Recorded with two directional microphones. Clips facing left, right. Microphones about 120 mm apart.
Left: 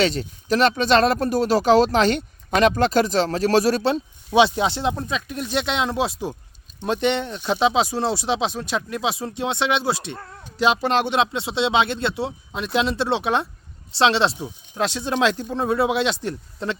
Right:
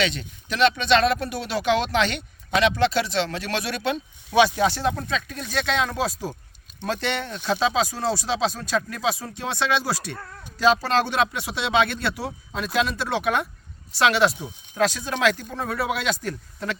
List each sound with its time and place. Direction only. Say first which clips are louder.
0.0 s speech: left 5 dB; 40° left (ahead or behind)
4.3 s speech: left 1 dB; 20° left (ahead or behind)